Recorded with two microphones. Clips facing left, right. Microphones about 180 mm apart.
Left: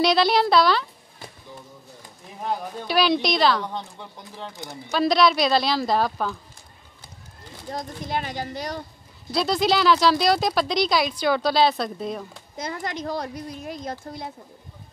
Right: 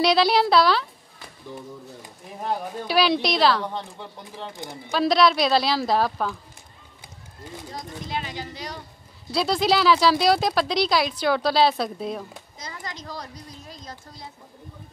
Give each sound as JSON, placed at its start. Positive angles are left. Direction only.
{"t": 0.0, "sound": "speech", "side_deg": -5}
{"t": 2.4, "sound": "speech", "side_deg": 0}
{"t": 7.7, "sound": "speech", "side_deg": 50}
{"t": 9.3, "sound": "speech", "side_deg": -5}
{"t": 12.5, "sound": "a woman's voice", "side_deg": 55}